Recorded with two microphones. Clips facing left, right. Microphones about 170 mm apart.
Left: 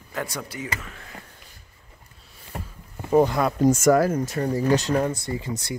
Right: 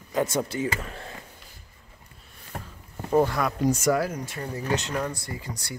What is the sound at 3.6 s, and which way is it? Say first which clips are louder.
Speech: left 6 dB; 45° left (ahead or behind).